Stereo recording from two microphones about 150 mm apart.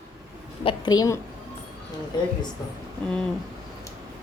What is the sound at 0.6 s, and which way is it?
Speech, 30° left (ahead or behind).